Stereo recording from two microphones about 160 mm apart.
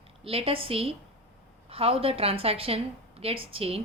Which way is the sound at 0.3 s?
35° right (ahead or behind).